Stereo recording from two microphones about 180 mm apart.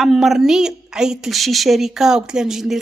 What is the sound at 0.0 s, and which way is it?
A woman's voice, centre (ahead or behind).